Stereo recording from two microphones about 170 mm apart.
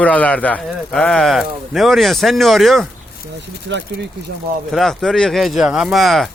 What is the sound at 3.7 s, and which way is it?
Speech, 90° right.